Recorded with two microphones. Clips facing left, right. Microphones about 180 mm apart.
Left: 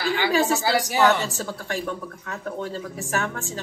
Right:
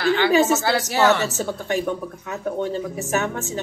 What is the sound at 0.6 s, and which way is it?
Speech, 15° left (ahead or behind).